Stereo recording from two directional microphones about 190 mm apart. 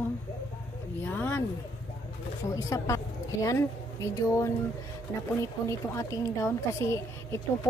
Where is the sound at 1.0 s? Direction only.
10° left (ahead or behind).